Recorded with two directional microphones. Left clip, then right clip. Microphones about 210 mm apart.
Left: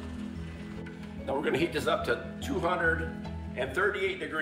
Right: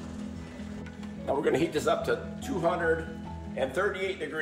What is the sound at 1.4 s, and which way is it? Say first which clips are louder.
Speech: right 2 dB; 50° right (ahead or behind).